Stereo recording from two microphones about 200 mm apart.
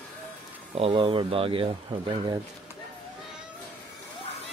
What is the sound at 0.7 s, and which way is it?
Speech, 25° right (ahead or behind).